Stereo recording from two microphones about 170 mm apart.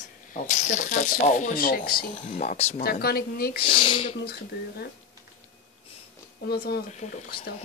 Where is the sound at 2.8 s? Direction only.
65° left (ahead or behind).